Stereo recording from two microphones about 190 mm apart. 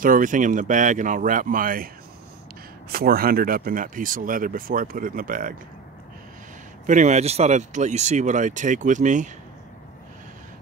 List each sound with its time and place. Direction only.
0.0 s speech: 45° right (ahead or behind)
2.9 s speech: 50° right (ahead or behind)
6.9 s speech: 40° right (ahead or behind)